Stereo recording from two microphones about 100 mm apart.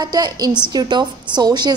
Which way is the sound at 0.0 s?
40° right (ahead or behind).